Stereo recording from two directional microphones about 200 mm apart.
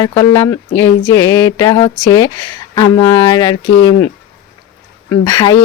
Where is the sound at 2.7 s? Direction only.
15° left (ahead or behind).